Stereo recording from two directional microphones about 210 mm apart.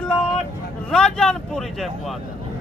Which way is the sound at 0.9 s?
5° left (ahead or behind).